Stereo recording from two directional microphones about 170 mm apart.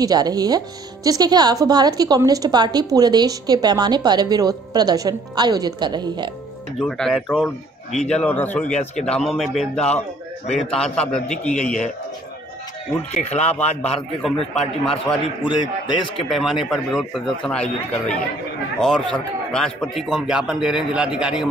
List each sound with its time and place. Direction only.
0.0 s speech: 25° right (ahead or behind)
6.8 s a man's voice: 5° left (ahead or behind)
13.1 s speech: 40° left (ahead or behind)
14.2 s a man's voice: 5° left (ahead or behind)
15.4 s speech: 30° left (ahead or behind)
16.3 s a man's voice: centre (ahead or behind)